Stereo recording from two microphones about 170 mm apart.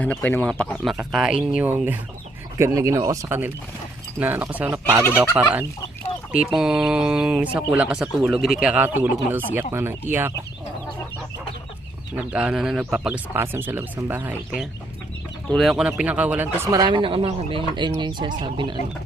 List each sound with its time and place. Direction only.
0.0 s speech: 5° left (ahead or behind)
0.9 s speech: 5° right (ahead or behind)
6.6 s speech: 5° right (ahead or behind)
12.1 s speech: 5° right (ahead or behind)
16.7 s speech: 25° right (ahead or behind)